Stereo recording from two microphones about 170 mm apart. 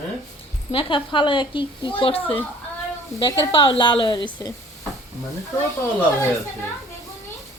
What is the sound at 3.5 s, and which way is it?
Speech, 30° left (ahead or behind).